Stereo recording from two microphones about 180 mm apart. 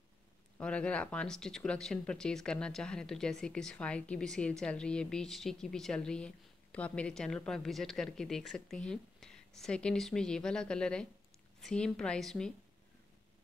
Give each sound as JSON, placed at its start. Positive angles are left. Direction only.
{"t": 0.6, "sound": "speech", "side_deg": 5}